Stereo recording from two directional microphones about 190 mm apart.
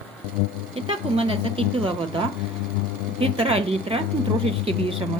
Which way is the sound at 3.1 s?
30° right (ahead or behind).